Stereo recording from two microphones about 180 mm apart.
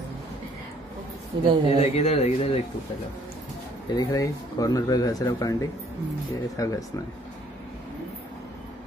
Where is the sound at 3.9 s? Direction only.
20° left (ahead or behind).